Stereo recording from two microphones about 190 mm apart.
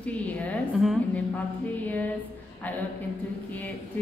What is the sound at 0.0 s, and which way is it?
A woman's voice, 5° left (ahead or behind).